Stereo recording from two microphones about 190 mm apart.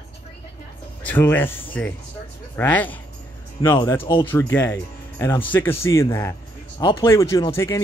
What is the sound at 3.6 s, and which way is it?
Speech, 25° left (ahead or behind).